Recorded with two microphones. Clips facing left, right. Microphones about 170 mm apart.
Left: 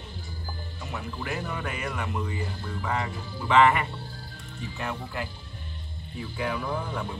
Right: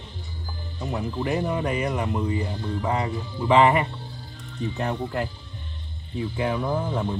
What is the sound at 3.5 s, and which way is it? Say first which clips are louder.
Speech: right 3 dB; 35° right (ahead or behind).